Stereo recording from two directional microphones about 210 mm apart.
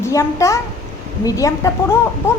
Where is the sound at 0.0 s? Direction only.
15° left (ahead or behind).